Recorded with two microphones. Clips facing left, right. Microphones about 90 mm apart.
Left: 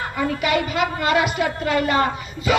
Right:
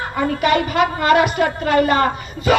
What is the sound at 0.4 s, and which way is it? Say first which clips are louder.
A woman's voice: right 6 dB; 45° right (ahead or behind).